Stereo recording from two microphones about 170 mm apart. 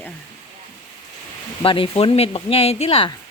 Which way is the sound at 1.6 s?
30° left (ahead or behind).